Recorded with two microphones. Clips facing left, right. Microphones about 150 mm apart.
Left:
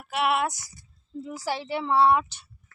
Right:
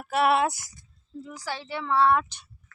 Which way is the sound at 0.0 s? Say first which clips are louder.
Right 3 dB; 40° right (ahead or behind).